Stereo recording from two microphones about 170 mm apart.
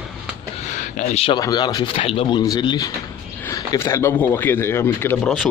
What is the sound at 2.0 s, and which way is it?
Speech, 35° left (ahead or behind).